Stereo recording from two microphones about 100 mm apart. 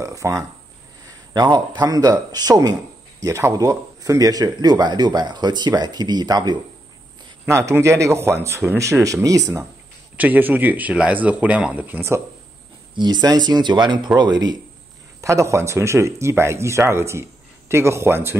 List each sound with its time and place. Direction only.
0.0 s speech: 30° right (ahead or behind)
1.3 s speech: 45° right (ahead or behind)
3.3 s speech: 30° right (ahead or behind)
7.4 s speech: 30° right (ahead or behind)
10.1 s speech: 15° right (ahead or behind)
12.9 s speech: 45° right (ahead or behind)
15.2 s speech: 30° right (ahead or behind)